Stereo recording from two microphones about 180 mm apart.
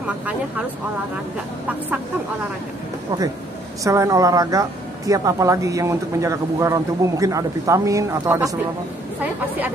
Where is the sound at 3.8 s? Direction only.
15° right (ahead or behind).